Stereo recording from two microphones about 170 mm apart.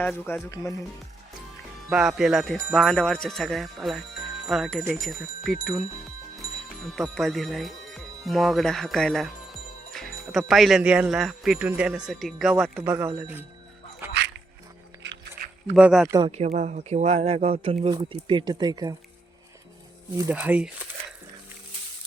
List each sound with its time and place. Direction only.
0.0 s speech: 10° left (ahead or behind)
0.5 s speech: 20° left (ahead or behind)
1.9 s speech: 5° right (ahead or behind)
6.9 s speech: centre (ahead or behind)
14.0 s dog: 15° right (ahead or behind)
15.7 s speech: centre (ahead or behind)
16.0 s speech: 20° right (ahead or behind)
16.5 s speech: 50° right (ahead or behind); by 18.9 s 25° right (ahead or behind)
20.3 s speech: 5° right (ahead or behind)